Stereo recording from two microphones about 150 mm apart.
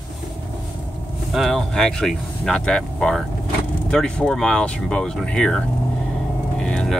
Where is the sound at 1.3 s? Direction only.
Centre (ahead or behind).